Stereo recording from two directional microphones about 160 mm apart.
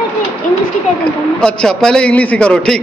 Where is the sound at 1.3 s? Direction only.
5° left (ahead or behind).